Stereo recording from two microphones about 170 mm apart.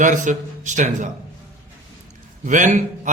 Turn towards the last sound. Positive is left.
turn(degrees=-45)  # may be behind; listen again after turning